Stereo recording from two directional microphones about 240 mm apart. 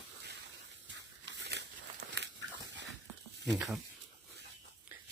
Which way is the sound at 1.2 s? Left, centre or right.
Right.